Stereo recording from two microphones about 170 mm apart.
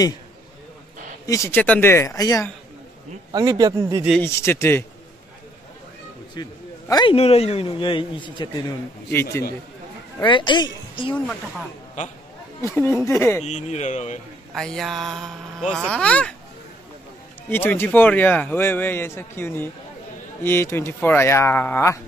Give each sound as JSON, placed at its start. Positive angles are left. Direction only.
{"t": 1.2, "sound": "speech", "side_deg": 20}
{"t": 3.3, "sound": "speech", "side_deg": -20}
{"t": 4.2, "sound": "speech", "side_deg": 15}
{"t": 6.4, "sound": "speech", "side_deg": 25}
{"t": 7.2, "sound": "speech", "side_deg": 35}
{"t": 9.1, "sound": "speech", "side_deg": 15}
{"t": 10.2, "sound": "speech", "side_deg": 30}
{"t": 12.6, "sound": "speech", "side_deg": 15}
{"t": 13.4, "sound": "speech", "side_deg": 45}
{"t": 14.5, "sound": "a sound", "side_deg": 0}
{"t": 17.5, "sound": "speech", "side_deg": 10}